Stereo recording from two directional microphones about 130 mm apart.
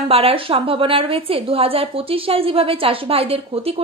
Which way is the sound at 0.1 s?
50° right (ahead or behind).